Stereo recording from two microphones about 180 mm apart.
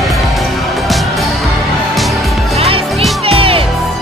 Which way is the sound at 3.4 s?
30° right (ahead or behind).